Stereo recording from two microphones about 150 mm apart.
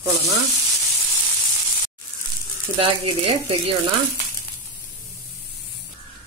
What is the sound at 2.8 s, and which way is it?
Speech, 40° right (ahead or behind).